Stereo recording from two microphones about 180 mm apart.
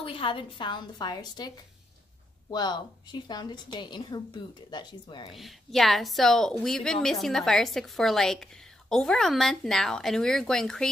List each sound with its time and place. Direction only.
0.0 s speech: 30° left (ahead or behind)
2.5 s speech: 25° left (ahead or behind)
5.3 s a woman's voice: centre (ahead or behind)